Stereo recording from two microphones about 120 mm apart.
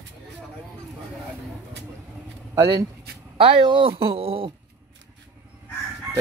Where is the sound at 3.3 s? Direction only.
50° right (ahead or behind).